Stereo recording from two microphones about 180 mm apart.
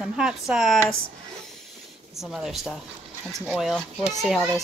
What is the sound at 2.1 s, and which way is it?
Speech, centre (ahead or behind).